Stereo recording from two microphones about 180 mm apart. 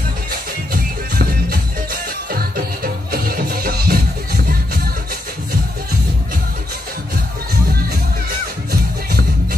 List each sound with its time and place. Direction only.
2.3 s music: 55° right (ahead or behind)